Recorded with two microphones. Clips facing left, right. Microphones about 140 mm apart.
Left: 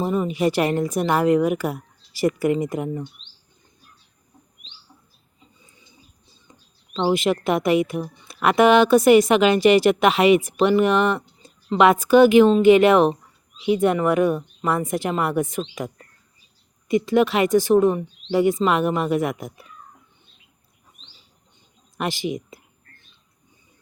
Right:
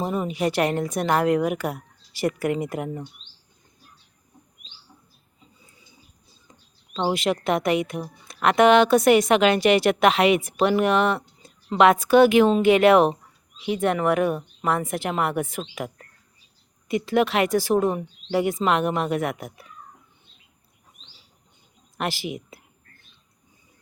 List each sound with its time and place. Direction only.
0.0 s a woman's voice: centre (ahead or behind)
6.9 s a woman's voice: centre (ahead or behind)
16.9 s a woman's voice: centre (ahead or behind)
21.9 s a woman's voice: centre (ahead or behind)